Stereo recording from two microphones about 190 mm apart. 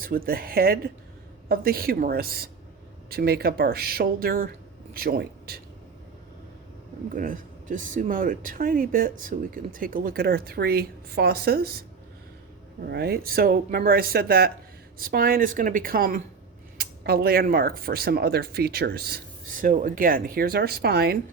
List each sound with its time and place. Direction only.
0.0 s speech: 50° right (ahead or behind)
7.1 s speech: 45° right (ahead or behind)
12.9 s speech: 55° right (ahead or behind)